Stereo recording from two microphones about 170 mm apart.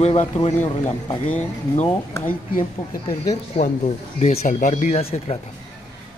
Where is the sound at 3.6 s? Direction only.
40° left (ahead or behind).